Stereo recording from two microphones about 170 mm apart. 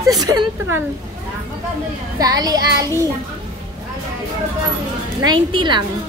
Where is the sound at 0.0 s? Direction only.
20° right (ahead or behind).